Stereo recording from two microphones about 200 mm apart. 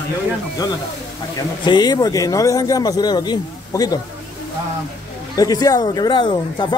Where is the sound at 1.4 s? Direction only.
20° left (ahead or behind).